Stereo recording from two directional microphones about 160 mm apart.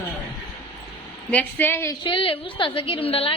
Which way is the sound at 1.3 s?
10° left (ahead or behind).